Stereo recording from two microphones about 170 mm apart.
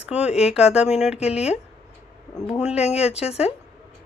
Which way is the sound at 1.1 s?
40° left (ahead or behind).